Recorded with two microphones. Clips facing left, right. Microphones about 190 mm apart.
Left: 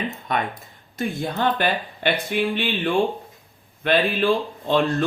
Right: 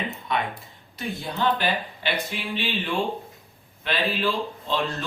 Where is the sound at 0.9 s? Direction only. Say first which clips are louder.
Left 5 dB; 50° left (ahead or behind).